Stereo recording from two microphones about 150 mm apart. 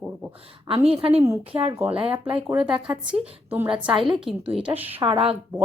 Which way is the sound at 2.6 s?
5° right (ahead or behind).